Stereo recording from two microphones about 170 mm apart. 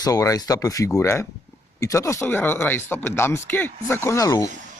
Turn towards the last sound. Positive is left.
turn(degrees=20)  # may be behind; listen again after turning